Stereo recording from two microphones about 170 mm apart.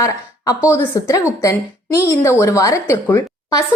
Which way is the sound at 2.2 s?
15° left (ahead or behind).